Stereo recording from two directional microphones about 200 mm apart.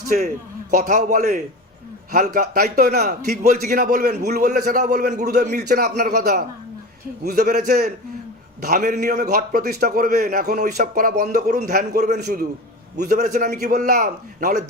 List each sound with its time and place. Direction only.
0.7 s a man's voice: 40° right (ahead or behind)
5.5 s a man's voice: 55° right (ahead or behind)
13.1 s a man's voice: 35° right (ahead or behind)